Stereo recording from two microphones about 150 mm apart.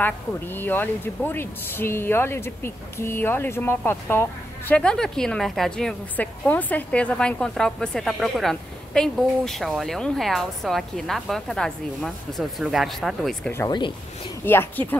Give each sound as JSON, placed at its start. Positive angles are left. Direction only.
{"t": 0.0, "sound": "speech", "side_deg": 15}
{"t": 13.5, "sound": "speech", "side_deg": 15}